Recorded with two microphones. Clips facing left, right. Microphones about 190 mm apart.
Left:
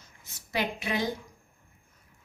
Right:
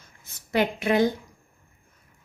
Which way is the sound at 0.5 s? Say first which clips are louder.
Right 8 dB; 55° right (ahead or behind).